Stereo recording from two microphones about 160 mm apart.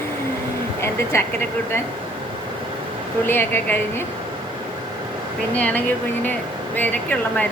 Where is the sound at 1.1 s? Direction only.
15° left (ahead or behind).